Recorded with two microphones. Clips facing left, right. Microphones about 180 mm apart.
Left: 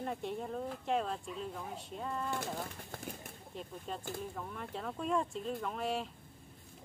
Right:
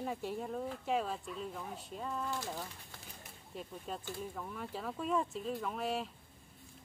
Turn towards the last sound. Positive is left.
turn(degrees=0)  # may be behind; listen again after turning